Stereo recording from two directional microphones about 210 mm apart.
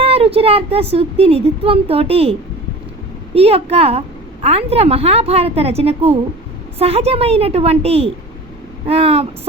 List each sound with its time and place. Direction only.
0.0 s speech: 30° right (ahead or behind)
3.3 s speech: 30° right (ahead or behind)